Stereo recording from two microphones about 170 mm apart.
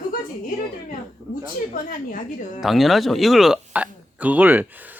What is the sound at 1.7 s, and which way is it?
Speech, 50° left (ahead or behind).